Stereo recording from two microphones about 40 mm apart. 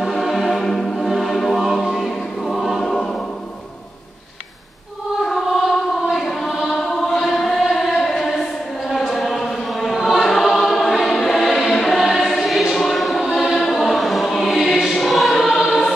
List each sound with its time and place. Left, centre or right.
0.0 s music: centre
0.9 s music: centre
2.5 s choir: centre
2.8 s choir: centre
5.2 s choir: centre
12.7 s choir: centre